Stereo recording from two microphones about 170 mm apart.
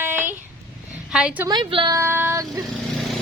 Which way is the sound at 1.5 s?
25° right (ahead or behind).